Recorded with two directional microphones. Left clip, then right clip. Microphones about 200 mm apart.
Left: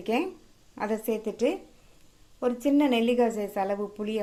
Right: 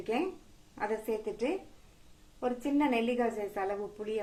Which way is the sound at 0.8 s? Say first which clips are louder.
Left 4 dB; 55° left (ahead or behind).